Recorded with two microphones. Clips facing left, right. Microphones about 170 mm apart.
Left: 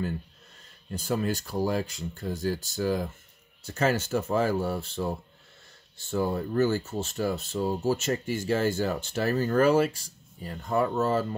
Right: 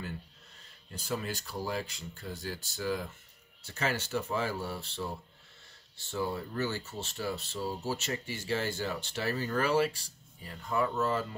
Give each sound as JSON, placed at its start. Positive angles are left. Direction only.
{"t": 0.9, "sound": "speech", "side_deg": 45}